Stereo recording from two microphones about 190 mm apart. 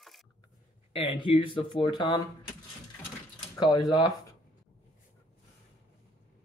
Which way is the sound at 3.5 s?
20° left (ahead or behind).